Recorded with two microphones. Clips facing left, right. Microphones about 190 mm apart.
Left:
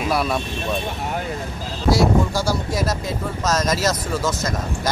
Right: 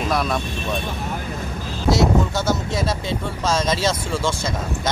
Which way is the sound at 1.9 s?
25° right (ahead or behind).